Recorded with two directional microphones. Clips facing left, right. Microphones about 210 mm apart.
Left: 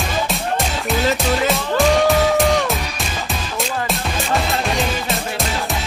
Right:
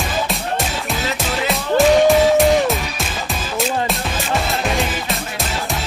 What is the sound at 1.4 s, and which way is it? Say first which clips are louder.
Music: right 4 dB; centre (ahead or behind).